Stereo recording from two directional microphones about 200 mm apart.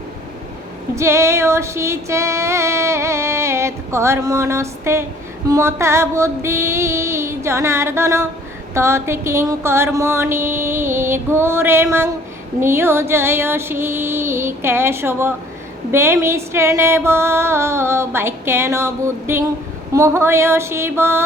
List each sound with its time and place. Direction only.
0.9 s female singing: 15° right (ahead or behind)